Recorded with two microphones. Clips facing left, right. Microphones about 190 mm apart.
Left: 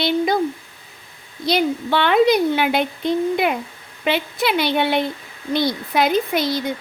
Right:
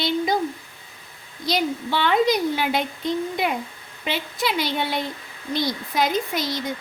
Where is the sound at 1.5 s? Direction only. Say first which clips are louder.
Left 5 dB; 60° left (ahead or behind).